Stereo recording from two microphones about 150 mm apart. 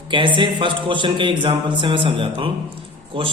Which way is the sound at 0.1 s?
35° right (ahead or behind).